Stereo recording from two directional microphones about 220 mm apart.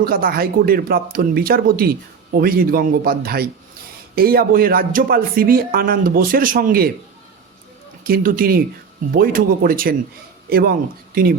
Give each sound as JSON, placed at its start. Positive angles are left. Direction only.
{"t": 0.0, "sound": "speech", "side_deg": -40}
{"t": 8.0, "sound": "speech", "side_deg": -40}